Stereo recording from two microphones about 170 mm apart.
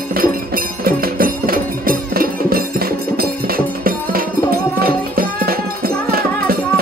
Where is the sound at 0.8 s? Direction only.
60° right (ahead or behind).